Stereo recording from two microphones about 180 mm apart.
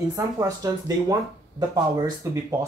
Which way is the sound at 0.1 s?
20° right (ahead or behind).